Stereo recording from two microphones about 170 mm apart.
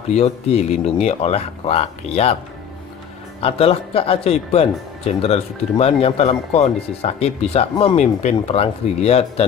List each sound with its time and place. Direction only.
0.1 s speech: 40° left (ahead or behind)
3.3 s speech: 35° left (ahead or behind)